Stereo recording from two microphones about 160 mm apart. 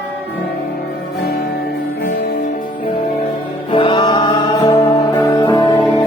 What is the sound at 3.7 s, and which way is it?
Music, 30° left (ahead or behind).